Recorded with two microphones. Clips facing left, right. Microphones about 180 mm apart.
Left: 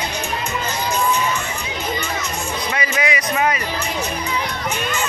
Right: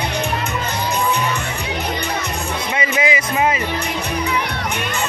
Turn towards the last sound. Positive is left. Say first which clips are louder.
# right 2 dB
turn(degrees=-25)  # may be behind; listen again after turning